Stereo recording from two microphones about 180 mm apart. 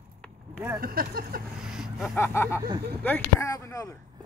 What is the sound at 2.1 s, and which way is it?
Speech, 15° left (ahead or behind).